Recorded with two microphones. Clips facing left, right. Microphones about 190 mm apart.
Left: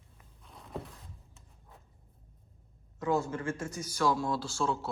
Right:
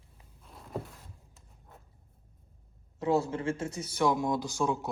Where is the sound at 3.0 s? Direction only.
30° right (ahead or behind).